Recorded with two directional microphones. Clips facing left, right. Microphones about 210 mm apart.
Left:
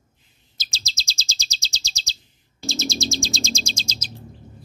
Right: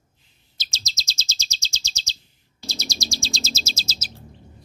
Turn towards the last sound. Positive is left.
turn(degrees=-5)  # may be behind; listen again after turning